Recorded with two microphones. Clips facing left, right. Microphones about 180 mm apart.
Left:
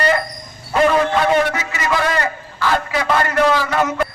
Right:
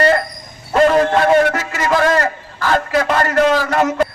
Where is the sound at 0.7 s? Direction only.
45° right (ahead or behind).